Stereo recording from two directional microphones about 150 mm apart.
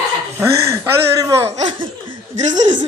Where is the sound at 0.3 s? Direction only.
20° right (ahead or behind).